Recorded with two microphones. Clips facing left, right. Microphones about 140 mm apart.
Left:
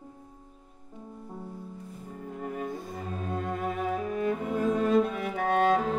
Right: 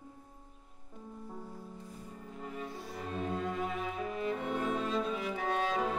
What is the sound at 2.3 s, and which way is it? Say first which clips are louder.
Music: left 8 dB; 50° left (ahead or behind).